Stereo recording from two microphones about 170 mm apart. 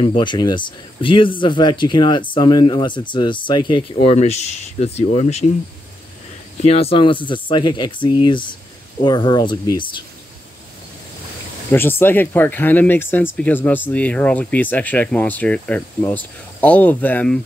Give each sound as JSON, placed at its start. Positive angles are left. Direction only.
{"t": 0.0, "sound": "speech", "side_deg": 30}
{"t": 6.6, "sound": "speech", "side_deg": 35}
{"t": 11.7, "sound": "speech", "side_deg": 10}